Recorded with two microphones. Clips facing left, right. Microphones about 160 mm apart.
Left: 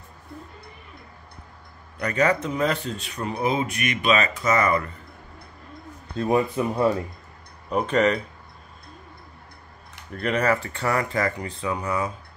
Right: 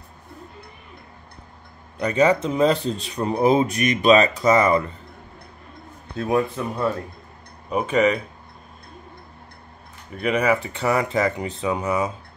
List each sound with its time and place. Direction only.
2.0 s speech: 25° right (ahead or behind)
6.1 s speech: 5° left (ahead or behind)
7.7 s speech: 5° right (ahead or behind)
10.1 s speech: 10° right (ahead or behind)